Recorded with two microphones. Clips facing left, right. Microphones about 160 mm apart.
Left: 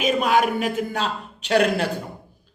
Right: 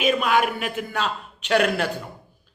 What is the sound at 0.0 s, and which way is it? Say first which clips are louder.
A man's voice: left 1 dB; 40° left (ahead or behind).